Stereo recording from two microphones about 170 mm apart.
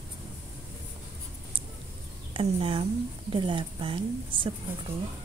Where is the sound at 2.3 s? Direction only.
30° right (ahead or behind).